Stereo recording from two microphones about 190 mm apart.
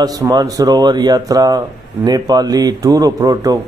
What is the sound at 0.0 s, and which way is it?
A man's voice, 20° right (ahead or behind).